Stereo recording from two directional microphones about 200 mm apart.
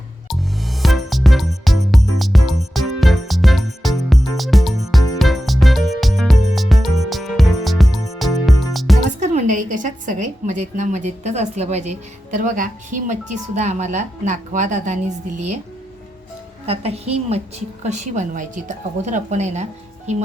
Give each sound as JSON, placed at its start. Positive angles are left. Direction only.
{"t": 0.3, "sound": "music", "side_deg": 0}
{"t": 9.2, "sound": "a woman's voice", "side_deg": -40}
{"t": 16.6, "sound": "a woman's voice", "side_deg": -30}